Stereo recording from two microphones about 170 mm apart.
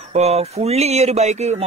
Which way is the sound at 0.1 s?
40° right (ahead or behind).